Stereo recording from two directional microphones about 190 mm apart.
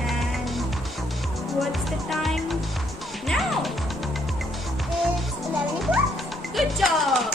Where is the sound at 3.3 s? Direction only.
Centre (ahead or behind).